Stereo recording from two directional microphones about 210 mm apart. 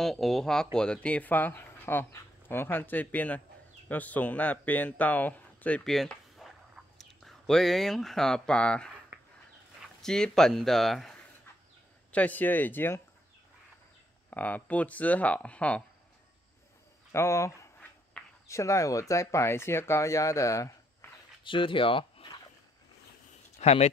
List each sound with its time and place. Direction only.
0.0 s speech: centre (ahead or behind)
10.0 s speech: 5° left (ahead or behind)
14.3 s speech: 10° left (ahead or behind)
17.1 s speech: 15° left (ahead or behind)
23.6 s speech: 30° left (ahead or behind)